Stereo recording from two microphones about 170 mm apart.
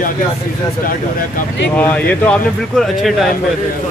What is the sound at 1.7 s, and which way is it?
Speech, 10° left (ahead or behind).